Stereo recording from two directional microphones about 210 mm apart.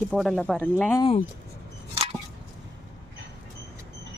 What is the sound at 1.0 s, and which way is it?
Speech, 25° left (ahead or behind).